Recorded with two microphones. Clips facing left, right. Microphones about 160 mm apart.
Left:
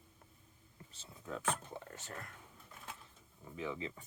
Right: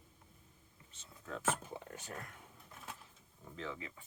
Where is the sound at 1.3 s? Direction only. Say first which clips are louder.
Right 1 dB; centre (ahead or behind).